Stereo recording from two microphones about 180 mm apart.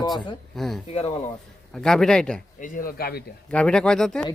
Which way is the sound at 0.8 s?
35° left (ahead or behind).